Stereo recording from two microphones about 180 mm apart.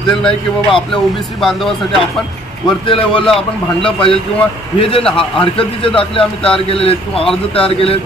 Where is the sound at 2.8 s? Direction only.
30° left (ahead or behind).